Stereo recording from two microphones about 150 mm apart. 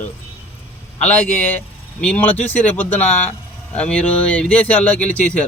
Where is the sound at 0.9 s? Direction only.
10° left (ahead or behind).